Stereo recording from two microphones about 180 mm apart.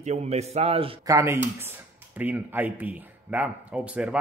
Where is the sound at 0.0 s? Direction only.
40° right (ahead or behind).